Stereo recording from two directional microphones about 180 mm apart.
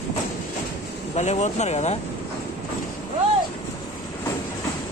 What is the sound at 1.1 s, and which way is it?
Speech, 40° left (ahead or behind).